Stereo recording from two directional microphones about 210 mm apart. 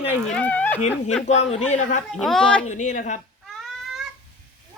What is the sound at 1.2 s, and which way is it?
Speech, 30° left (ahead or behind).